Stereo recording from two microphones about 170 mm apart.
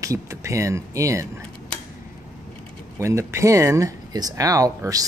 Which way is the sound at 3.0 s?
15° right (ahead or behind).